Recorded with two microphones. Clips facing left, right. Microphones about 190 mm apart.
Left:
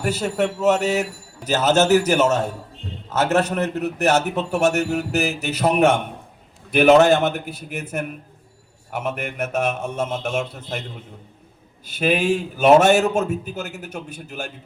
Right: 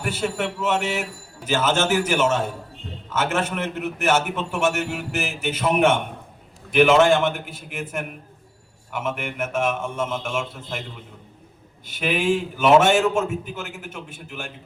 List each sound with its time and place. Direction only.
0.0 s a man's voice: 40° left (ahead or behind)
11.9 s a man's voice: 40° left (ahead or behind)